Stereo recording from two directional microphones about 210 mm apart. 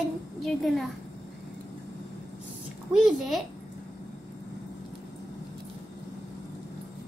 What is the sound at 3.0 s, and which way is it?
Speech, centre (ahead or behind).